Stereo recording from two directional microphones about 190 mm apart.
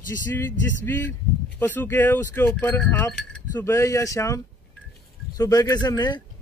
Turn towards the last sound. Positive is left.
turn(degrees=20)  # may be behind; listen again after turning